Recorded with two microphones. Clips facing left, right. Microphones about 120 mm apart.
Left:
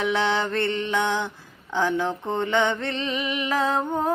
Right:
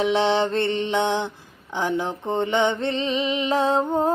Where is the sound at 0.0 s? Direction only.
25° right (ahead or behind).